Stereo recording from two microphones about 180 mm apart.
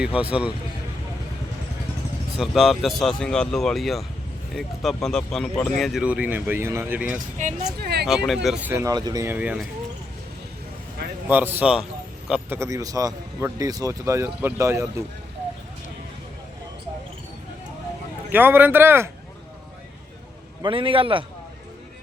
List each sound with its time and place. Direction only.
0.0 s a man's voice: 5° right (ahead or behind)
2.4 s a man's voice: centre (ahead or behind)
7.3 s speech: 40° right (ahead or behind)
7.8 s speech: 65° right (ahead or behind)
8.0 s a man's voice: centre (ahead or behind)
11.3 s a man's voice: 10° right (ahead or behind)
18.3 s a man's voice: 10° right (ahead or behind)
20.6 s a man's voice: 30° right (ahead or behind)